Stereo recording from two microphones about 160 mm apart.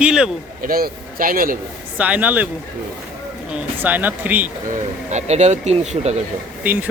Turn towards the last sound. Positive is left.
turn(degrees=-10)  # may be behind; listen again after turning